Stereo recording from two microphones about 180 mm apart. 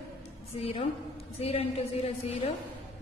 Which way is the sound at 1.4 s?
35° left (ahead or behind).